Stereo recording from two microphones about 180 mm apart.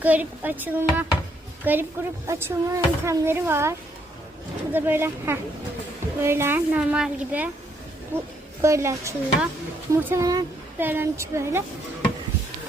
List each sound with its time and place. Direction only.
0.0 s speech: 10° right (ahead or behind)